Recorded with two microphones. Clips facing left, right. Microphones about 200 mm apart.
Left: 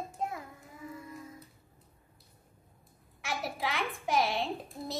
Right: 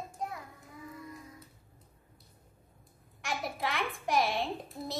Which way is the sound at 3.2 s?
Centre (ahead or behind).